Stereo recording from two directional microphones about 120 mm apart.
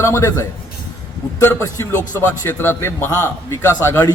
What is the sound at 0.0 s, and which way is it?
A man's voice, 25° left (ahead or behind).